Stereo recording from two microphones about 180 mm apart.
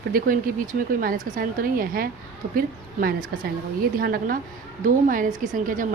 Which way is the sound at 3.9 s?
55° right (ahead or behind).